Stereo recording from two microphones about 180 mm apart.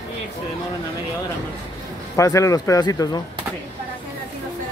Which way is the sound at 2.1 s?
20° left (ahead or behind).